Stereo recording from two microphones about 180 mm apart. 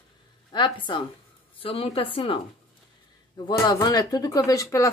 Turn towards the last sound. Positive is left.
turn(degrees=20)  # may be behind; listen again after turning